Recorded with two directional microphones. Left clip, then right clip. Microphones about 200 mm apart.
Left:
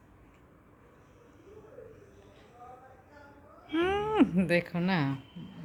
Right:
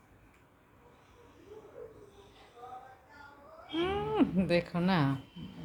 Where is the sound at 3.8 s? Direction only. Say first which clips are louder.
Left 4 dB; 40° left (ahead or behind); by 5.2 s 10° left (ahead or behind).